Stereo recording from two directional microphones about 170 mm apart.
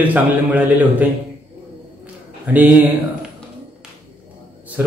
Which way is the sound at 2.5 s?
10° right (ahead or behind).